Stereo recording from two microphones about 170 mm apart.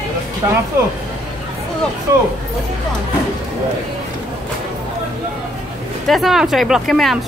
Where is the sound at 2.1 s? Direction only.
20° right (ahead or behind).